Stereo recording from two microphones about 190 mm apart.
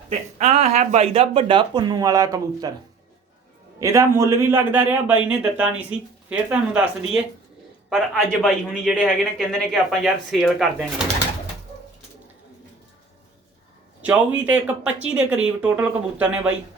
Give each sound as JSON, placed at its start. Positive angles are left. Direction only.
{"t": 0.1, "sound": "speech", "side_deg": -35}
{"t": 3.8, "sound": "a man's voice", "side_deg": -15}
{"t": 14.0, "sound": "a man's voice", "side_deg": -5}